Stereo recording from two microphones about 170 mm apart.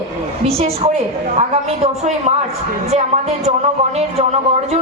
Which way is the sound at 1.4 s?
40° right (ahead or behind).